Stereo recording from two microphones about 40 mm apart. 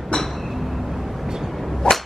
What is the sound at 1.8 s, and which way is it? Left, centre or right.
Whip, centre.